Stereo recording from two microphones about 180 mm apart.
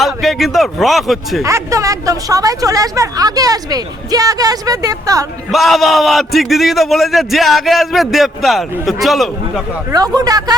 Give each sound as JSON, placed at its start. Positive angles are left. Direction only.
{"t": 0.0, "sound": "a man's voice", "side_deg": 0}
{"t": 1.5, "sound": "speech", "side_deg": -15}
{"t": 5.5, "sound": "a man's voice", "side_deg": 0}
{"t": 9.9, "sound": "speech", "side_deg": -20}